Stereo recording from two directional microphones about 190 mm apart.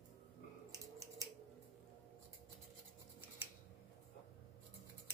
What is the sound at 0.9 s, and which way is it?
Scissors, 20° right (ahead or behind).